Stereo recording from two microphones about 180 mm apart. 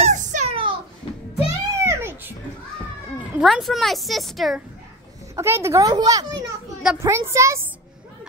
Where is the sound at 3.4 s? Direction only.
Centre (ahead or behind).